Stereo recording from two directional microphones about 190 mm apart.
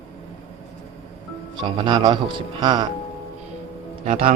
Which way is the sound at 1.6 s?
25° right (ahead or behind).